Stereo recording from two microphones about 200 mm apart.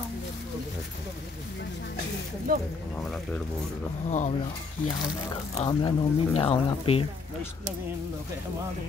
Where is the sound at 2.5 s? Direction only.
45° right (ahead or behind).